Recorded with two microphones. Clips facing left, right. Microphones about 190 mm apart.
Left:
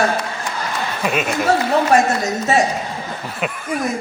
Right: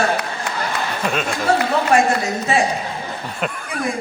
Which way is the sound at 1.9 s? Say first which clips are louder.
Left 1 dB; 40° left (ahead or behind).